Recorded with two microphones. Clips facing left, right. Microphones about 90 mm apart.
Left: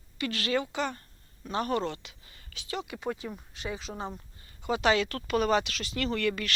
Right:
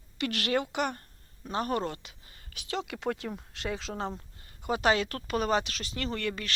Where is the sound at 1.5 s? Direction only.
40° right (ahead or behind).